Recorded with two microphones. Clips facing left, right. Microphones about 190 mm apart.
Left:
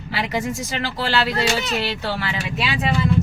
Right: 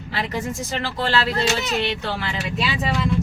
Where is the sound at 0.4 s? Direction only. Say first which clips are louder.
Left 1 dB; 10° left (ahead or behind).